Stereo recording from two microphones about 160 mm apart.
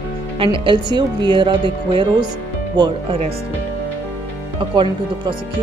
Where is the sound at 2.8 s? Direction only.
35° right (ahead or behind).